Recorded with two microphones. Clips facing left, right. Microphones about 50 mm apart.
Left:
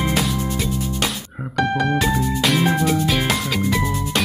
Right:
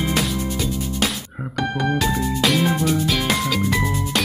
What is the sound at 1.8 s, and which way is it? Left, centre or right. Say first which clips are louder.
Speech: left 1 dB; centre.